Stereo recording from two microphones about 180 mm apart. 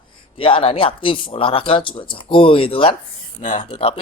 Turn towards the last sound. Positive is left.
turn(degrees=30)  # may be behind; listen again after turning